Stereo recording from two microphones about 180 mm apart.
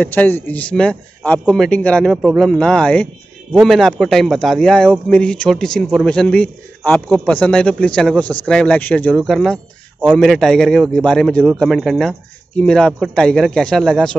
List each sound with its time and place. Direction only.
0.0 s a man's voice: 10° left (ahead or behind)